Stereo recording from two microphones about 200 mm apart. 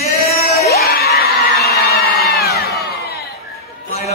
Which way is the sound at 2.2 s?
50° left (ahead or behind).